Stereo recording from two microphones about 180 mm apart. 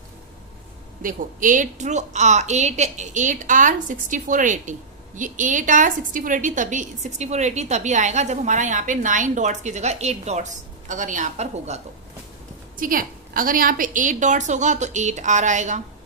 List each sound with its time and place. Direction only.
1.0 s a woman's voice: 45° right (ahead or behind)
12.8 s a woman's voice: 50° right (ahead or behind)